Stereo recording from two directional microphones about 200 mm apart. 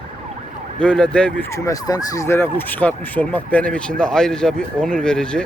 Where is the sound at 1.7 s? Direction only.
15° left (ahead or behind).